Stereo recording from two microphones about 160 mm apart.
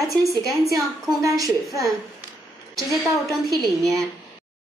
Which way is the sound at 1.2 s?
20° right (ahead or behind).